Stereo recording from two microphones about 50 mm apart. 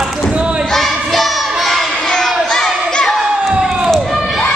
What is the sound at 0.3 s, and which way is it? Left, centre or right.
Basketball bounce, right.